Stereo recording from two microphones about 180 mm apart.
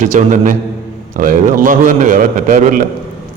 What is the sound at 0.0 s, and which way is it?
A man's voice, 45° right (ahead or behind).